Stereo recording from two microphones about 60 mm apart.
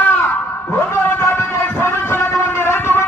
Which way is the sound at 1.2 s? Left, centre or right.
Left.